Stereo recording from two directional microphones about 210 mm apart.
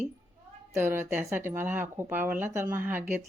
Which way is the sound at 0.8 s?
10° right (ahead or behind).